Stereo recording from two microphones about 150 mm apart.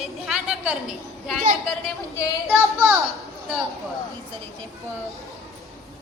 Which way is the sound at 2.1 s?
20° left (ahead or behind).